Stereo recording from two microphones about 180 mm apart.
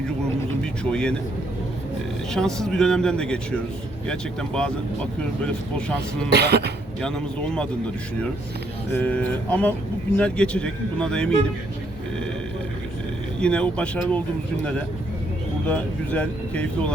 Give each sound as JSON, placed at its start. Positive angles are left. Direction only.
{"t": 0.6, "sound": "speech", "side_deg": 5}
{"t": 2.3, "sound": "speech", "side_deg": 0}
{"t": 6.3, "sound": "speech", "side_deg": -65}
{"t": 7.0, "sound": "speech", "side_deg": 5}
{"t": 8.9, "sound": "speech", "side_deg": 10}
{"t": 13.4, "sound": "speech", "side_deg": 5}
{"t": 15.6, "sound": "speech", "side_deg": 10}